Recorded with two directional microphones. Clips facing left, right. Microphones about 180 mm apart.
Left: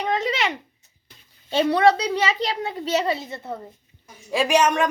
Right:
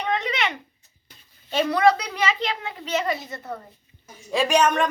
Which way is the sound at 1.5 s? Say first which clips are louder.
Left 2 dB; 30° left (ahead or behind).